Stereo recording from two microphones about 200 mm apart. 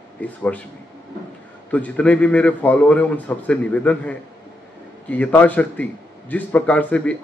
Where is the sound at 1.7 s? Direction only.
5° left (ahead or behind).